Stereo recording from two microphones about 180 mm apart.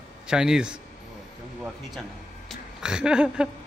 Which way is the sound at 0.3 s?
5° right (ahead or behind).